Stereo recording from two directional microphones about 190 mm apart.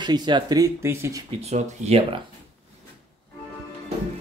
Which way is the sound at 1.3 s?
35° right (ahead or behind).